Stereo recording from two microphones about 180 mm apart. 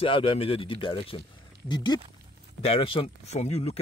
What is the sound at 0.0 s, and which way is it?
Speech, 30° left (ahead or behind).